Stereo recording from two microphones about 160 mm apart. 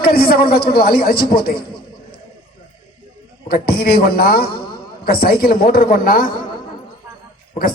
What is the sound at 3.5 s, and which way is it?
A man's voice, 70° left (ahead or behind).